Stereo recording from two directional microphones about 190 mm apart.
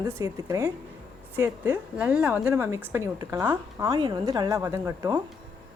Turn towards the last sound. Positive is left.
turn(degrees=-15)  # may be behind; listen again after turning